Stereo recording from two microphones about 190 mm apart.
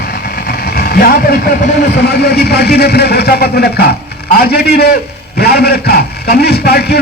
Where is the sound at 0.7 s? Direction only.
55° left (ahead or behind).